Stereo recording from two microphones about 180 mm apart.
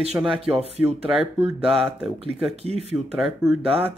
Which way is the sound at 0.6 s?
35° right (ahead or behind).